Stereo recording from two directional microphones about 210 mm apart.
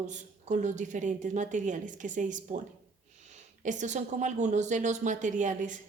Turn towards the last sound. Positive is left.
turn(degrees=-35)  # may be behind; listen again after turning